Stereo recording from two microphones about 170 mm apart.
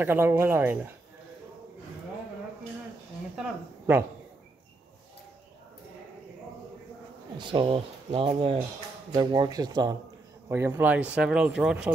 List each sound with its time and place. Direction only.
0.0 s speech: 10° right (ahead or behind)
7.3 s speech: 30° right (ahead or behind); by 11.9 s 5° right (ahead or behind)